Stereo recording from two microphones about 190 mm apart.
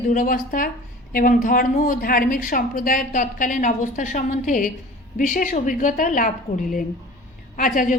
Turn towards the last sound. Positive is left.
turn(degrees=45)  # may be behind; listen again after turning